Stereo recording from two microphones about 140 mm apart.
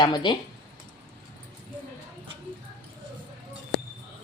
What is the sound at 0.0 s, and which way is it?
Speech, 35° left (ahead or behind).